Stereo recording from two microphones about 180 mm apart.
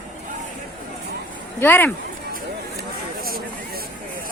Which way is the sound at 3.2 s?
55° right (ahead or behind).